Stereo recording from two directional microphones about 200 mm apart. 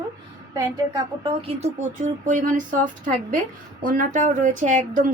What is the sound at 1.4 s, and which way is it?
Speech, 35° right (ahead or behind).